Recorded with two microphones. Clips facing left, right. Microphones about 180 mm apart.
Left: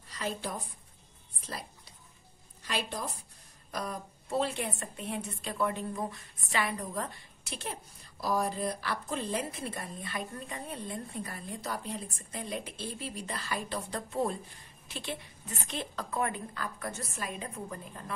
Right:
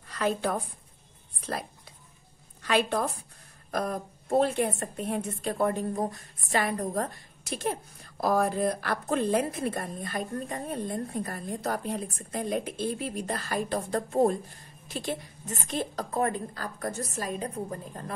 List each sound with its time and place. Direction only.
0.1 s a woman's voice: 60° right (ahead or behind)
3.7 s a woman's voice: 50° right (ahead or behind)